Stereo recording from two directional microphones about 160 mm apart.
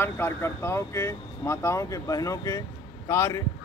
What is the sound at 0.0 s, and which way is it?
A man's voice, 15° left (ahead or behind).